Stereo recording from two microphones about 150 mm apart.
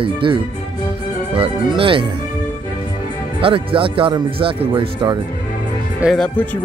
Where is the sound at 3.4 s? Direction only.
35° right (ahead or behind).